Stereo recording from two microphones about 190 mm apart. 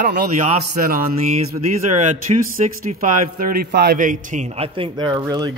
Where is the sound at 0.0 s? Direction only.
45° right (ahead or behind).